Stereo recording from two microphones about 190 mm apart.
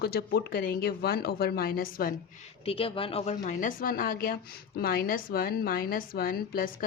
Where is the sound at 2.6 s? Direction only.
30° left (ahead or behind).